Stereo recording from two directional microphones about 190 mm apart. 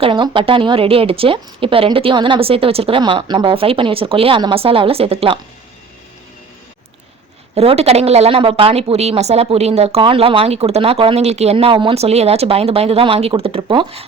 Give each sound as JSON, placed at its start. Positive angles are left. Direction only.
{"t": 0.0, "sound": "speech", "side_deg": -25}
{"t": 7.5, "sound": "a woman's voice", "side_deg": -30}